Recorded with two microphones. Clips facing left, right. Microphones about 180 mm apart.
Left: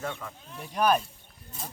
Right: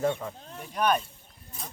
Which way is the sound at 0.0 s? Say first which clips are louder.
Right 8 dB; 30° right (ahead or behind).